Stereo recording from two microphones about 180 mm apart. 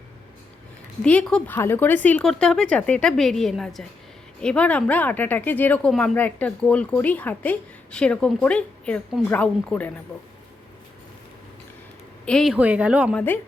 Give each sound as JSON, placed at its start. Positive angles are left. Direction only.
{"t": 1.0, "sound": "speech", "side_deg": 5}
{"t": 12.2, "sound": "speech", "side_deg": 5}
{"t": 13.1, "sound": "speech", "side_deg": 10}